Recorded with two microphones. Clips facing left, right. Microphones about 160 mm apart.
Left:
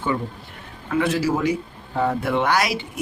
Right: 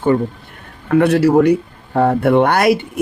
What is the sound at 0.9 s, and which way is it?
Speech, 60° right (ahead or behind).